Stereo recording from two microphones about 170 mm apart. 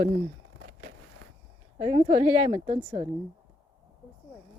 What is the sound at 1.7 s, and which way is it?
Speech, 30° right (ahead or behind).